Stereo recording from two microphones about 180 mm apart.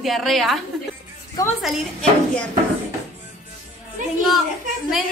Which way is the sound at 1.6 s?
5° left (ahead or behind).